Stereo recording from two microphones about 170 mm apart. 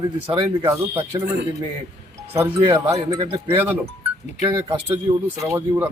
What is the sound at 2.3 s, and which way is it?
Speech, 15° right (ahead or behind).